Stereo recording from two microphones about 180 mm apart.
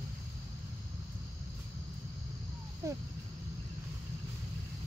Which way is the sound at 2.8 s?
15° right (ahead or behind).